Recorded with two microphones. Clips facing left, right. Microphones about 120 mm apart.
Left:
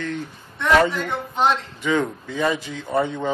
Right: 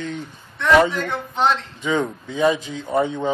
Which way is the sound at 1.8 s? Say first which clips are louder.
Even; 15° right (ahead or behind).